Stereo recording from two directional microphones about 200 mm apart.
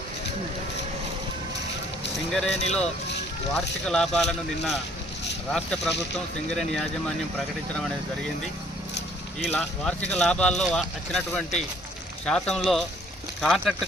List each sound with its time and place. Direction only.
2.1 s speech: centre (ahead or behind)
2.5 s speech: 35° left (ahead or behind)
3.5 s speech: centre (ahead or behind)
9.5 s speech: 5° left (ahead or behind)